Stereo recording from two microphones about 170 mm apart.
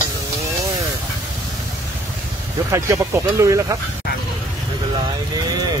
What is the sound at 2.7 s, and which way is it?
Speech, 15° right (ahead or behind).